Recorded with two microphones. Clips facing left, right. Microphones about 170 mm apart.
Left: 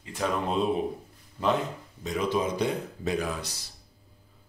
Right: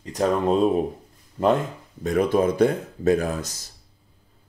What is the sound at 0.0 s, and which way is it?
Speech, 40° right (ahead or behind).